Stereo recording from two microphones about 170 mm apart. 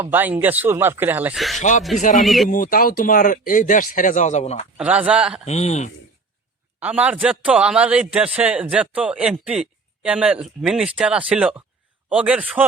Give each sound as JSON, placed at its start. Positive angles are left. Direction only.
{"t": 0.0, "sound": "a man's voice", "side_deg": -10}
{"t": 1.4, "sound": "speech", "side_deg": 0}
{"t": 2.0, "sound": "speech", "side_deg": 50}
{"t": 2.2, "sound": "speech", "side_deg": 0}
{"t": 2.5, "sound": "speech", "side_deg": 55}
{"t": 4.8, "sound": "a man's voice", "side_deg": -10}
{"t": 5.5, "sound": "speech", "side_deg": 40}
{"t": 6.7, "sound": "a man's voice", "side_deg": -10}